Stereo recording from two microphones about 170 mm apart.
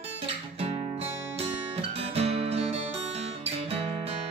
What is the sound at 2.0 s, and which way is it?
Guitar, 35° right (ahead or behind).